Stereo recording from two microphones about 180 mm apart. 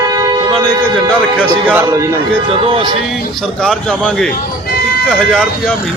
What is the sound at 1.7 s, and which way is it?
Speech, 15° right (ahead or behind).